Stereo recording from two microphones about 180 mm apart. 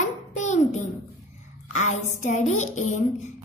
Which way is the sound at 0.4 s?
40° left (ahead or behind).